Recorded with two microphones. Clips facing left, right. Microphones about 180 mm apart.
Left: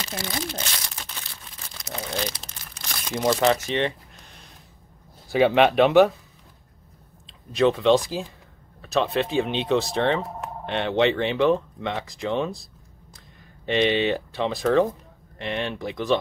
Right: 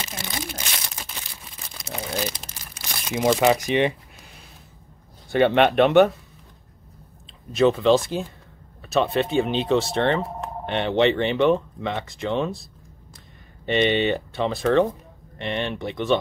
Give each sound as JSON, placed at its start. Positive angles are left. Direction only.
{"t": 0.2, "sound": "speech", "side_deg": -25}
{"t": 0.6, "sound": "speech", "side_deg": -10}
{"t": 1.0, "sound": "crumpling", "side_deg": -10}
{"t": 3.3, "sound": "speech", "side_deg": -10}
{"t": 7.5, "sound": "speech", "side_deg": 0}
{"t": 13.7, "sound": "speech", "side_deg": 0}